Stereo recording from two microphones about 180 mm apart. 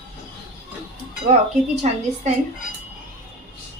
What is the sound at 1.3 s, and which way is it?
Speech, 40° right (ahead or behind).